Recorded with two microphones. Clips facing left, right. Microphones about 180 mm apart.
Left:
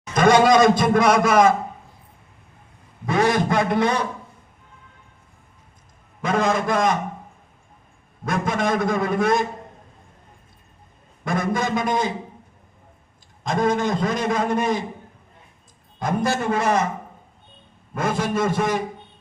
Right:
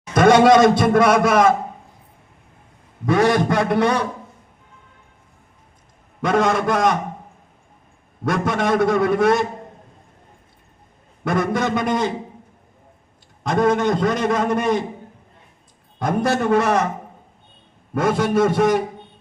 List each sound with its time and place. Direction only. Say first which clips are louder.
0.1 s a man's voice: right 3 dB; 70° right (ahead or behind)
3.1 s a man's voice: right 3 dB; 60° right (ahead or behind)
6.2 s a man's voice: right 3 dB; 65° right (ahead or behind)
8.2 s a man's voice: right 2 dB; 70° right (ahead or behind)
11.2 s a man's voice: right 3 dB; 65° right (ahead or behind)
13.4 s a man's voice: right 3 dB; 65° right (ahead or behind)
16.0 s a man's voice: right 3 dB; 65° right (ahead or behind)
17.9 s a man's voice: right 5 dB; 65° right (ahead or behind)